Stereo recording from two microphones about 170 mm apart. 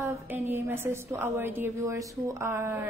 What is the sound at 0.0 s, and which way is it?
A woman's voice, 10° right (ahead or behind).